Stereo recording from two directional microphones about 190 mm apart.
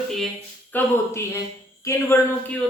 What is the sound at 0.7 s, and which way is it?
Speech, 10° left (ahead or behind).